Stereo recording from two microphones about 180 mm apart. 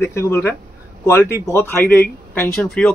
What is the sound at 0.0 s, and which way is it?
Speech, 15° left (ahead or behind).